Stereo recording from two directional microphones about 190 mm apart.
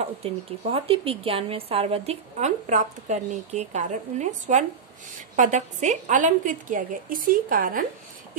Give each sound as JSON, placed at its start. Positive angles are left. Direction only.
{"t": 0.0, "sound": "a woman's voice", "side_deg": -30}